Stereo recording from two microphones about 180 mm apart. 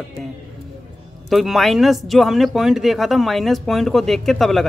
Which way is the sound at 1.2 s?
Centre (ahead or behind).